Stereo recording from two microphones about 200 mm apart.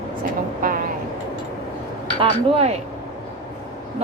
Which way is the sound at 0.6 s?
45° right (ahead or behind).